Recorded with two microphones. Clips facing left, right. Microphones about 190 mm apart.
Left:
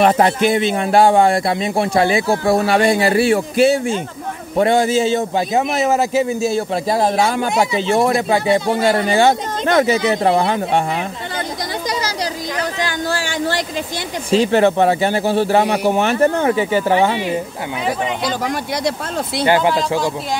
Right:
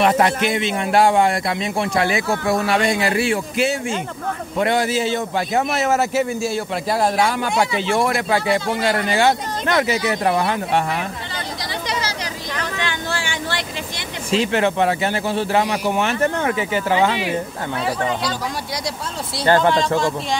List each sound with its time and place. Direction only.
0.0 s a man's voice: 35° left (ahead or behind)
4.6 s speech: 25° left (ahead or behind)
12.5 s a sound: 40° left (ahead or behind)
14.3 s a man's voice: 40° left (ahead or behind)
15.6 s a man's voice: 55° left (ahead or behind)
16.0 s a man's voice: 35° left (ahead or behind)
19.4 s speech: 10° left (ahead or behind)